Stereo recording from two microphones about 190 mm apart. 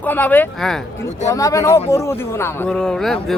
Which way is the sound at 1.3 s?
15° left (ahead or behind).